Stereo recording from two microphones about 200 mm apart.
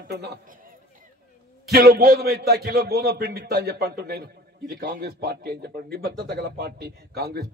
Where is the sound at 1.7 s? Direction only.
50° right (ahead or behind).